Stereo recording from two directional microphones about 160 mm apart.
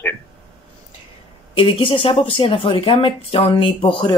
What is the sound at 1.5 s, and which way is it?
Speech, 35° left (ahead or behind).